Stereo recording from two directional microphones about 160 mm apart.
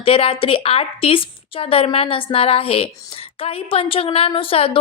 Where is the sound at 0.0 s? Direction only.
35° left (ahead or behind).